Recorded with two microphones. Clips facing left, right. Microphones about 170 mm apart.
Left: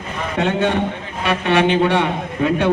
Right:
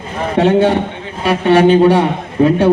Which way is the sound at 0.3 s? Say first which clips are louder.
Right 7 dB; 35° right (ahead or behind).